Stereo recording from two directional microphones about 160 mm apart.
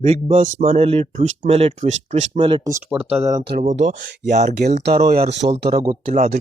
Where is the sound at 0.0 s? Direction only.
40° right (ahead or behind).